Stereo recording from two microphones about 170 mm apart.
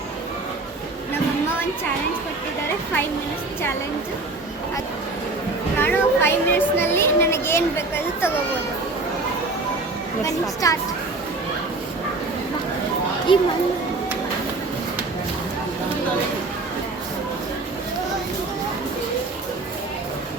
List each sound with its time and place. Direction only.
5.7 s speech: 10° left (ahead or behind)
10.2 s speech: 20° left (ahead or behind)
13.3 s speech: 30° left (ahead or behind)